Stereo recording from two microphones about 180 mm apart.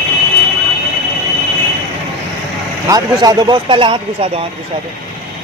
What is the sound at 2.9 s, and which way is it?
Speech, 20° right (ahead or behind).